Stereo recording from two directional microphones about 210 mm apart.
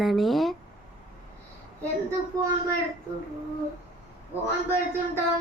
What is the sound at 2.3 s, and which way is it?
Speech, 15° right (ahead or behind).